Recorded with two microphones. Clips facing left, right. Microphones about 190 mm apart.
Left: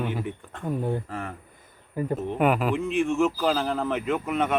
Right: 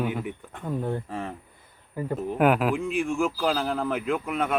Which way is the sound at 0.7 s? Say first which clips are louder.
Left 1 dB; 10° left (ahead or behind).